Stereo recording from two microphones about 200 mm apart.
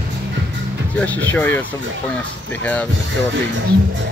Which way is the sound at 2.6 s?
5° left (ahead or behind).